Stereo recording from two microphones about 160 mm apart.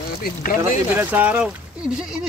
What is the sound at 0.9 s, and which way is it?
Speech, 10° right (ahead or behind).